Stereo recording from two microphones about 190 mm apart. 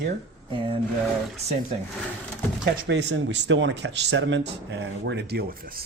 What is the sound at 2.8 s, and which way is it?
Speech, 65° right (ahead or behind).